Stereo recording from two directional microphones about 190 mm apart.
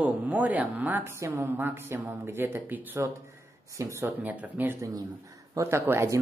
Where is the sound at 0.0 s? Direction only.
10° right (ahead or behind).